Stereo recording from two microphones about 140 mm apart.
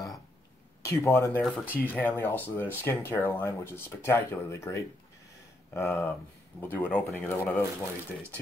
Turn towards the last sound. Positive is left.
turn(degrees=20)  # may be behind; listen again after turning